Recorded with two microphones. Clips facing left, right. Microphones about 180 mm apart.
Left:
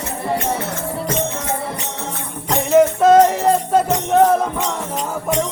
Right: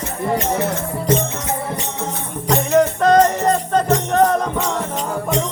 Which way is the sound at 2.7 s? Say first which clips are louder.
Left 3 dB; 5° left (ahead or behind).